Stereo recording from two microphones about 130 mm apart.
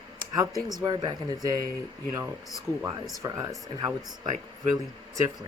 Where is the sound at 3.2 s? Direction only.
30° right (ahead or behind).